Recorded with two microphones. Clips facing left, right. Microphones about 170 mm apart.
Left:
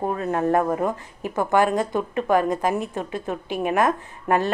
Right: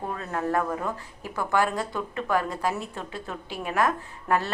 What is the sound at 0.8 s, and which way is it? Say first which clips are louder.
Speech: left 7 dB; 20° left (ahead or behind).